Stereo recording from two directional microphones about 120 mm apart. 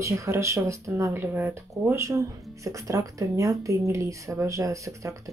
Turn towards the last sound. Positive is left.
turn(degrees=-25)  # may be behind; listen again after turning